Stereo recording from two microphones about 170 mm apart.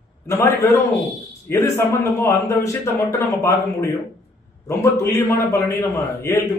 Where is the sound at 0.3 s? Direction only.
15° left (ahead or behind).